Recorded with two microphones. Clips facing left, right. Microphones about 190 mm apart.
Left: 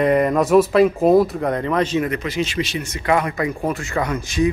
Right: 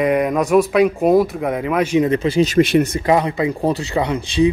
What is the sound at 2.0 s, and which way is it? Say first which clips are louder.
Speech: right 7 dB; 30° right (ahead or behind).